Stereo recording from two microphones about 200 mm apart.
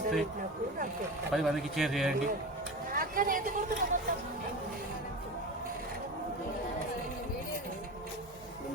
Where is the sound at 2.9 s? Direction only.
45° right (ahead or behind).